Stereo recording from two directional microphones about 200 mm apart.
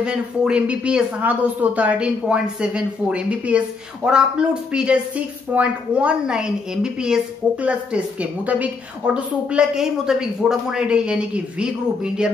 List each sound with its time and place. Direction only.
0.0 s speech: 5° right (ahead or behind)